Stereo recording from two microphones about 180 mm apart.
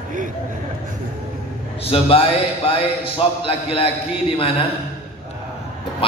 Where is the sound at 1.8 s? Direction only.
30° left (ahead or behind).